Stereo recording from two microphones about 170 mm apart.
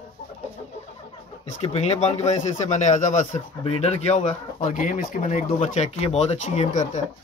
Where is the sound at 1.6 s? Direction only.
40° left (ahead or behind).